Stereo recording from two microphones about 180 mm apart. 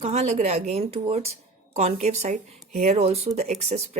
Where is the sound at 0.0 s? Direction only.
40° right (ahead or behind).